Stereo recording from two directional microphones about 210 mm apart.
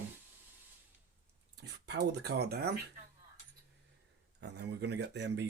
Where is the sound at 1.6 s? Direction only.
50° right (ahead or behind).